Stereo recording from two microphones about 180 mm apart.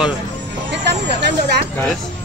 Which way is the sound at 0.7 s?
65° right (ahead or behind).